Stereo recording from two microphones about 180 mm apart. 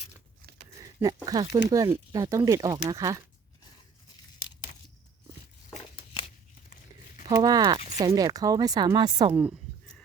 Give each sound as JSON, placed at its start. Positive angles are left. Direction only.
{"t": 0.8, "sound": "speech", "side_deg": -20}
{"t": 7.3, "sound": "speech", "side_deg": -20}